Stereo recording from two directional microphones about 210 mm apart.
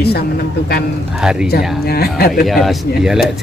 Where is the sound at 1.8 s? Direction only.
50° left (ahead or behind).